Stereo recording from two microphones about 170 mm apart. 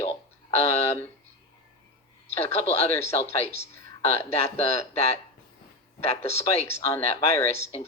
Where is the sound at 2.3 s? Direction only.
40° left (ahead or behind).